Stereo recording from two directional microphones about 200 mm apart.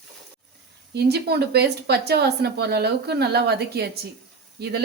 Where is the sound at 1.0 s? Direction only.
55° right (ahead or behind).